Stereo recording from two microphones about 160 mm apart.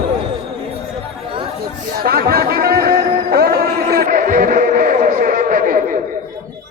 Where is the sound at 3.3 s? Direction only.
75° right (ahead or behind).